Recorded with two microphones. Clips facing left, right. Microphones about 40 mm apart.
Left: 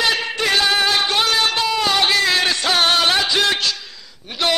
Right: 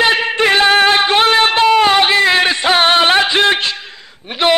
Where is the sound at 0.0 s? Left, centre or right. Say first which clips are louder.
Right 7 dB; right.